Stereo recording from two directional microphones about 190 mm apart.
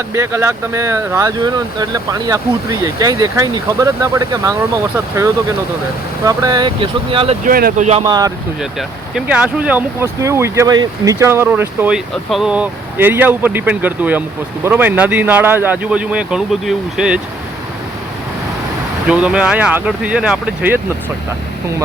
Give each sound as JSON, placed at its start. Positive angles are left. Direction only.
{"t": 0.1, "sound": "speech", "side_deg": -15}
{"t": 6.2, "sound": "speech", "side_deg": -20}
{"t": 7.4, "sound": "speech", "side_deg": -50}
{"t": 8.0, "sound": "speech", "side_deg": -20}
{"t": 9.1, "sound": "speech", "side_deg": -5}
{"t": 19.0, "sound": "speech", "side_deg": -5}